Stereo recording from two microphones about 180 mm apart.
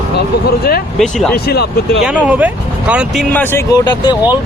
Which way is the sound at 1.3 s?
60° left (ahead or behind).